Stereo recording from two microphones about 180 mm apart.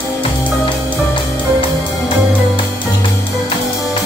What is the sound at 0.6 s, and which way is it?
Music, 25° left (ahead or behind).